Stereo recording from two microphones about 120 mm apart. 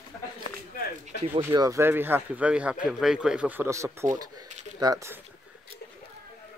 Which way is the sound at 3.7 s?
25° right (ahead or behind).